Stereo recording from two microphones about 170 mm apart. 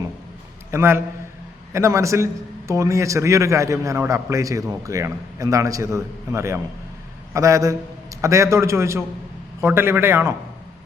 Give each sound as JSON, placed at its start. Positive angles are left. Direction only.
{"t": 0.7, "sound": "a man's voice", "side_deg": -15}